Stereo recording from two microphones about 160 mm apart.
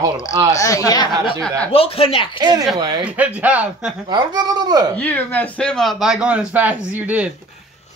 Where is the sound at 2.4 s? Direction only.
25° right (ahead or behind).